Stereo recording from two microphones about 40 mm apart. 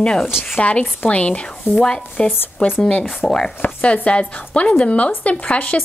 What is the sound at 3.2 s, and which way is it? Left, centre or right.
Speech, centre.